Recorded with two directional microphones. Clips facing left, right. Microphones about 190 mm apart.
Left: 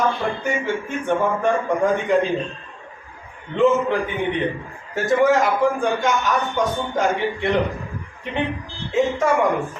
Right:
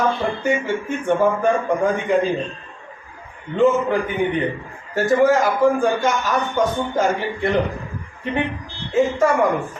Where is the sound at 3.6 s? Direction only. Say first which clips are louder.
Right 1 dB; centre (ahead or behind).